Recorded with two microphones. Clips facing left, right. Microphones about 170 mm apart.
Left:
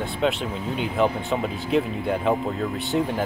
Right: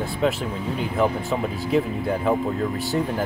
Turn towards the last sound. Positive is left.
turn(degrees=0)  # may be behind; listen again after turning